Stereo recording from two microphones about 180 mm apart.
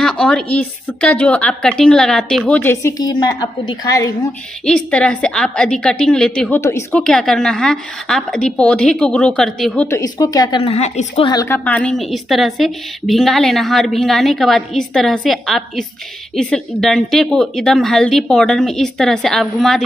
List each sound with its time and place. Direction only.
0.0 s a woman's voice: 5° left (ahead or behind); by 4.1 s 20° left (ahead or behind)
4.6 s a woman's voice: 5° left (ahead or behind); by 10.6 s 20° left (ahead or behind)
10.6 s a woman's voice: 40° left (ahead or behind)
11.2 s a woman's voice: 15° left (ahead or behind)